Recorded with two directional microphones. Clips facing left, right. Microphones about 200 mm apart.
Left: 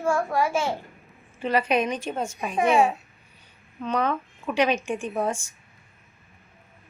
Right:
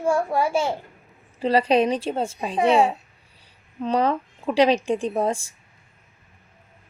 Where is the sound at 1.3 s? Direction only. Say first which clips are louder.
Right 4 dB; 35° right (ahead or behind).